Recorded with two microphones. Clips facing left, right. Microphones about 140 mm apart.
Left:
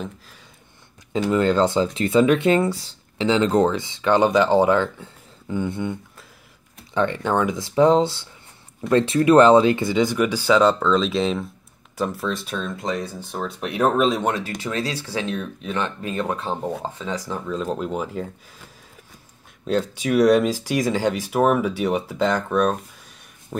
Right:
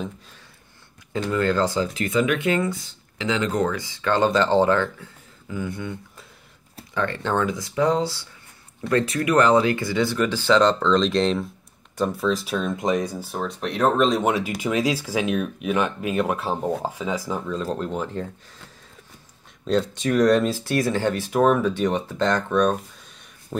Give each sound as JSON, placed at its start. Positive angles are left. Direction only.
{"t": 1.1, "sound": "speech", "side_deg": 20}
{"t": 6.9, "sound": "computer keyboard", "side_deg": 20}
{"t": 7.2, "sound": "speech", "side_deg": 15}
{"t": 7.5, "sound": "speech", "side_deg": 25}
{"t": 12.7, "sound": "speech", "side_deg": -20}
{"t": 13.3, "sound": "speech", "side_deg": 0}
{"t": 14.2, "sound": "speech", "side_deg": -10}
{"t": 17.5, "sound": "speech", "side_deg": 5}